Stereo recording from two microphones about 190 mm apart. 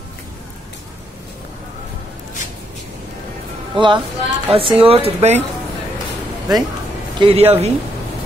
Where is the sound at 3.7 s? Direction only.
25° right (ahead or behind).